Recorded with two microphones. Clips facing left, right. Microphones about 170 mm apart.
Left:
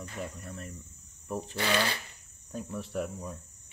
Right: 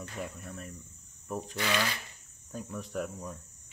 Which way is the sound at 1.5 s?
30° left (ahead or behind).